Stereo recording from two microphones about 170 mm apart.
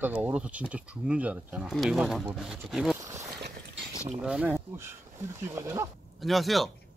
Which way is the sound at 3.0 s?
20° right (ahead or behind).